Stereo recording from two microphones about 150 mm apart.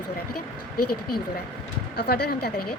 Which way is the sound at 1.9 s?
90° left.